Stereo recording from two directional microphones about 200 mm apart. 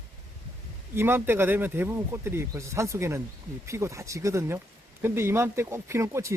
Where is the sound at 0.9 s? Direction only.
10° right (ahead or behind).